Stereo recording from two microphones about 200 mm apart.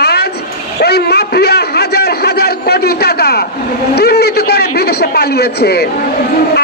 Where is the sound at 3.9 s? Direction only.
55° left (ahead or behind).